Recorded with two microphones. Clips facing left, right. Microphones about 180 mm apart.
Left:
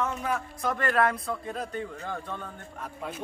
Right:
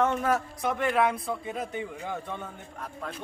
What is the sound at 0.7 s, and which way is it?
Speech, 5° right (ahead or behind).